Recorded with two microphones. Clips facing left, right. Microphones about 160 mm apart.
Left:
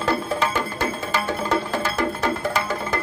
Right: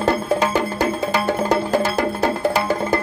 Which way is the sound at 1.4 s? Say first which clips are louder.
Right 5 dB; 40° right (ahead or behind).